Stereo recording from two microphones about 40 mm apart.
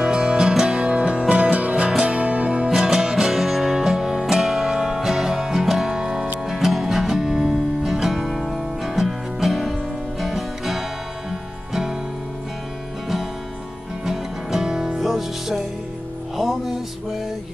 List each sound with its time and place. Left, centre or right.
0.0 s music: right
2.7 s music: centre
14.0 s music: centre